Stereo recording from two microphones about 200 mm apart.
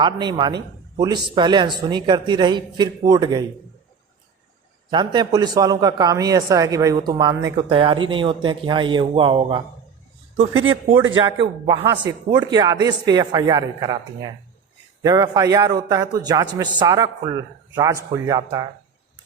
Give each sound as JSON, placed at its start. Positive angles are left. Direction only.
{"t": 0.0, "sound": "a man's voice", "side_deg": -20}
{"t": 4.9, "sound": "a man's voice", "side_deg": -20}
{"t": 10.9, "sound": "a man's voice", "side_deg": -40}
{"t": 11.6, "sound": "a man's voice", "side_deg": -25}